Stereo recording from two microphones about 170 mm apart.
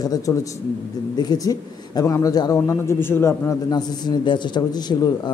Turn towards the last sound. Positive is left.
turn(degrees=25)  # may be behind; listen again after turning